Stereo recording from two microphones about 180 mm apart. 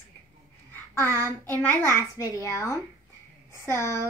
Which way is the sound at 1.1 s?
20° right (ahead or behind).